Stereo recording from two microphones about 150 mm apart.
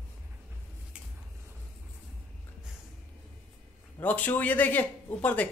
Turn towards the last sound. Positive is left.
turn(degrees=10)  # may be behind; listen again after turning